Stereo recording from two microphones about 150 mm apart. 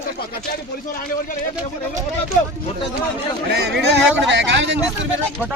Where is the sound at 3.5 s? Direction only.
90° right.